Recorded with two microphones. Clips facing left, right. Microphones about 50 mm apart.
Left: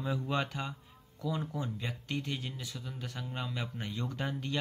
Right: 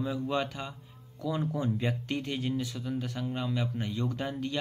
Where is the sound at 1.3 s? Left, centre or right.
Centre.